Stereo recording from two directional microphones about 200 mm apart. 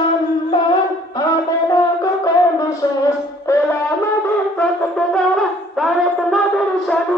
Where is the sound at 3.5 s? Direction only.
15° left (ahead or behind).